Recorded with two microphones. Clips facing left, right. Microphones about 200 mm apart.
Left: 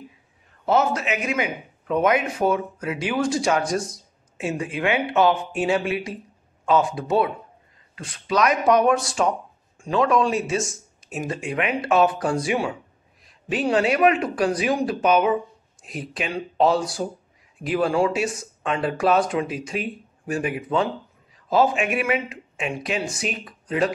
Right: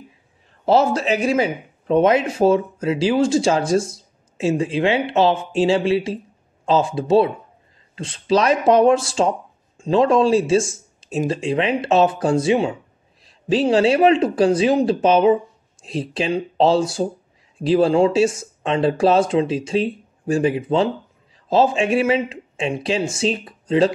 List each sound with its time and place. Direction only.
0.7 s speech: 30° right (ahead or behind)